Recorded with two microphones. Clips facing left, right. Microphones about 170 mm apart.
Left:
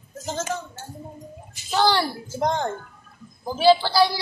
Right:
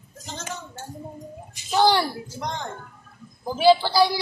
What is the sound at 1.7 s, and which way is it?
Speech, 15° right (ahead or behind).